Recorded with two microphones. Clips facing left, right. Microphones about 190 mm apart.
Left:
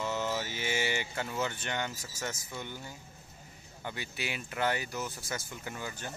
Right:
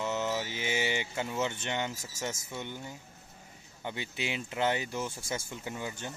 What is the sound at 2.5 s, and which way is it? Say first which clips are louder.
Speech: right 2 dB; 20° right (ahead or behind).